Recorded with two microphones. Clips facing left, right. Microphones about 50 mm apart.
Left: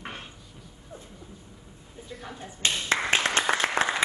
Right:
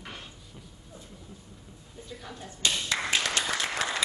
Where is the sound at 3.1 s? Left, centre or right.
Left.